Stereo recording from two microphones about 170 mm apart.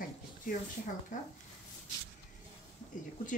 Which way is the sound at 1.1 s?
50° left (ahead or behind).